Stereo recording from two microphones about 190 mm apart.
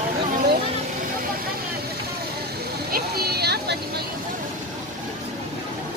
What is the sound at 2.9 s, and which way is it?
Vehicle, 55° right (ahead or behind).